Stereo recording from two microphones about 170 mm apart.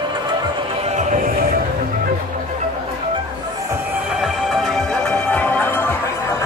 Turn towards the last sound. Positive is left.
turn(degrees=10)  # may be behind; listen again after turning